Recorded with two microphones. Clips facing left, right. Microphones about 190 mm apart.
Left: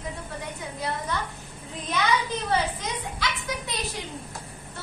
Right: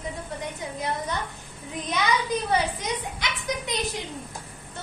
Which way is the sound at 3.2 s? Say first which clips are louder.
Left 2 dB; 20° right (ahead or behind).